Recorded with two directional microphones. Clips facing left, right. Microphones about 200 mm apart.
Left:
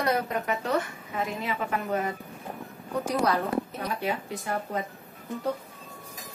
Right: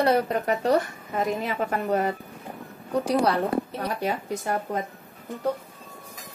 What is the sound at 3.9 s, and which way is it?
Speech, 40° right (ahead or behind).